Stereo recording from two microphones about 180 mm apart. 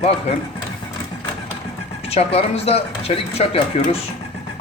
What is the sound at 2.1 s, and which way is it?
Speech, 35° left (ahead or behind).